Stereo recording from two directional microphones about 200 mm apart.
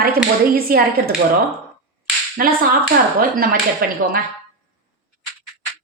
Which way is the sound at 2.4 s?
45° right (ahead or behind).